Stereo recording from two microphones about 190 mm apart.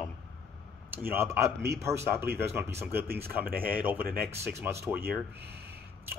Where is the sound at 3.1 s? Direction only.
55° right (ahead or behind).